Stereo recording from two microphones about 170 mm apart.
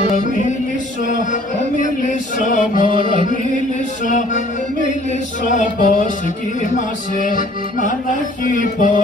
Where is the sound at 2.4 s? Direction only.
50° left (ahead or behind).